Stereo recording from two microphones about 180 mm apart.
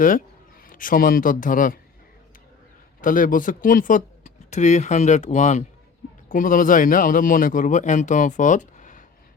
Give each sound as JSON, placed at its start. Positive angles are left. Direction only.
{"t": 0.6, "sound": "a man's voice", "side_deg": 50}
{"t": 3.0, "sound": "a man's voice", "side_deg": 45}